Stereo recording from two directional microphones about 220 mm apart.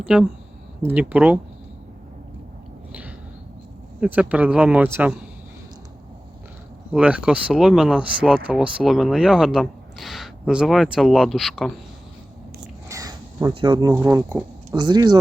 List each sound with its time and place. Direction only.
0.0 s speech: 5° right (ahead or behind)
2.9 s a sound: 5° right (ahead or behind)
4.0 s speech: 5° right (ahead or behind)
6.9 s speech: 5° right (ahead or behind)
12.9 s a sound: 15° right (ahead or behind)
13.9 s speech: 10° right (ahead or behind)